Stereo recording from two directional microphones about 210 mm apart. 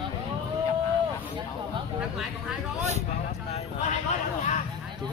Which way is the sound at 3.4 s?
30° left (ahead or behind).